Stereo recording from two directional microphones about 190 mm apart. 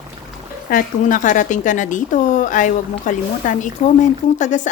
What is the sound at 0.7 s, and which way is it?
Speech, 45° left (ahead or behind).